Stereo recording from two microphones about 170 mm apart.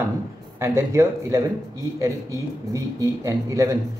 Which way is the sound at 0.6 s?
15° right (ahead or behind).